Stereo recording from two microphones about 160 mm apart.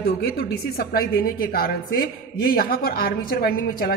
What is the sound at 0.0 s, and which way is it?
A woman's voice, 75° left (ahead or behind).